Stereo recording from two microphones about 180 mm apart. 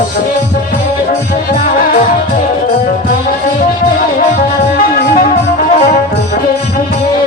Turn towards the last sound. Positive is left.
turn(degrees=40)  # may be behind; listen again after turning